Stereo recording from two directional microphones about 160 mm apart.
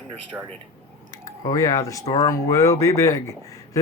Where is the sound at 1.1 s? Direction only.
20° left (ahead or behind).